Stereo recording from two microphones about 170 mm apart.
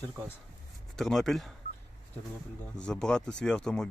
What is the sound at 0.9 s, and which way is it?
Speech, centre (ahead or behind).